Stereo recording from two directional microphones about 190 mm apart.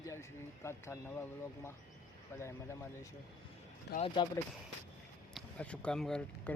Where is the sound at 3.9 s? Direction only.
60° left (ahead or behind).